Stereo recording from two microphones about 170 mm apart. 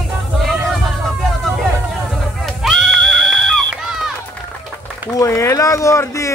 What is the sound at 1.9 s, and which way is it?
Goat, centre (ahead or behind).